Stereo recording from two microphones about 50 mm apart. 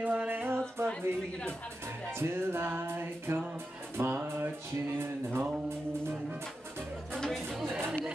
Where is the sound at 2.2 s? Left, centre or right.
Right.